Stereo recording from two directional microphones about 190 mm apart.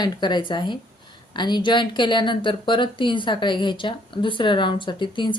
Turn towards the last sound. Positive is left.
turn(degrees=25)  # may be behind; listen again after turning